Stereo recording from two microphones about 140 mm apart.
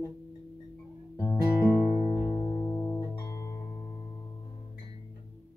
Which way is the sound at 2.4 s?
30° left (ahead or behind).